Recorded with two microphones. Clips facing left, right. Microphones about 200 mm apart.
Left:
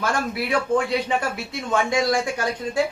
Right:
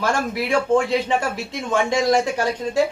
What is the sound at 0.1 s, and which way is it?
A man's voice, 25° right (ahead or behind).